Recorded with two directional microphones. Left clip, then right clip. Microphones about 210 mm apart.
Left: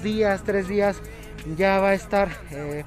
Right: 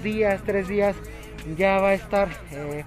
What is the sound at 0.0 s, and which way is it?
Speech, 15° left (ahead or behind).